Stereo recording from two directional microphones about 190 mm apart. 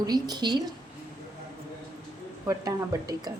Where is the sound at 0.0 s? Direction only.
20° right (ahead or behind).